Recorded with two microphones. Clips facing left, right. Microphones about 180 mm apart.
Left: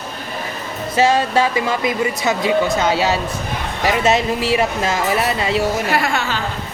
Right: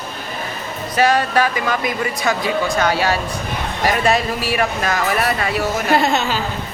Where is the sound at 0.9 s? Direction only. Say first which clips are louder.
Left 1 dB; 25° left (ahead or behind).